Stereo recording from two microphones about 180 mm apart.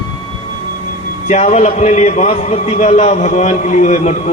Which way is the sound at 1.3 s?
40° left (ahead or behind).